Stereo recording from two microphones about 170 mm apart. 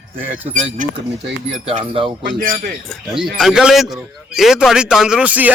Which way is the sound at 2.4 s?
60° right (ahead or behind).